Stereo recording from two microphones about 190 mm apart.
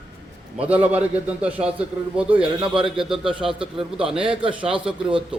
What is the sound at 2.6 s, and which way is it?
Speech, 25° right (ahead or behind).